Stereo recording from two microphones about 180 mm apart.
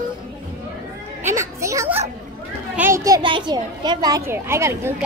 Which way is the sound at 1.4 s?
15° right (ahead or behind).